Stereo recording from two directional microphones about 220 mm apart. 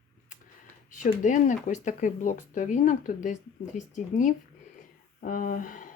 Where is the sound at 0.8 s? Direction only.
35° left (ahead or behind).